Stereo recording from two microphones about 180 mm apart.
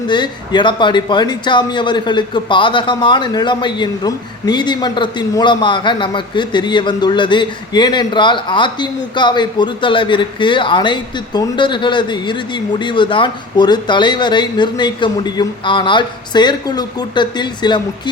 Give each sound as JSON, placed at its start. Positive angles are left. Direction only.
{"t": 0.1, "sound": "a man's voice", "side_deg": 25}